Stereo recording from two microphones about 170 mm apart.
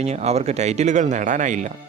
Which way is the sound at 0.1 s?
40° right (ahead or behind).